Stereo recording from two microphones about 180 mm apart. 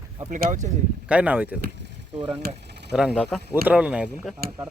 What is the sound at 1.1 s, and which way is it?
Speech, 10° right (ahead or behind).